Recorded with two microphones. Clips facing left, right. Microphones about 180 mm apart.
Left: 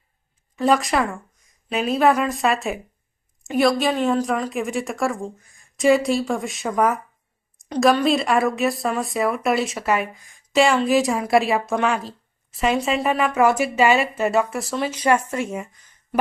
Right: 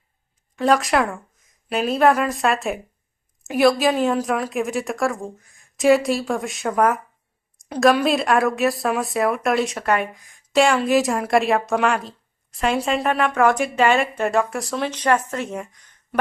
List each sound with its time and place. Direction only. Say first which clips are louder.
0.5 s speech: right 1 dB; centre (ahead or behind)